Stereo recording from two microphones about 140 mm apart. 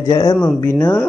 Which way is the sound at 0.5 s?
15° left (ahead or behind).